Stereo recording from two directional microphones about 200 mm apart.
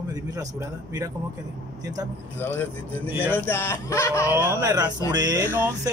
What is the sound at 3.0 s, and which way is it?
Speech, 10° right (ahead or behind).